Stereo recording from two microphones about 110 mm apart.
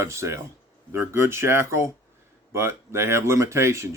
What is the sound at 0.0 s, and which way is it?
Speech, 25° right (ahead or behind).